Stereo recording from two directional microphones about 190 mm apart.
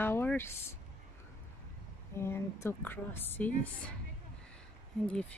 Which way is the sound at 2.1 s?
15° left (ahead or behind).